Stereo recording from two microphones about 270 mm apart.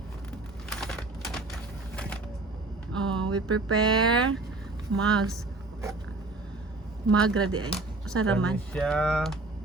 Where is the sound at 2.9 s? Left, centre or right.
Centre.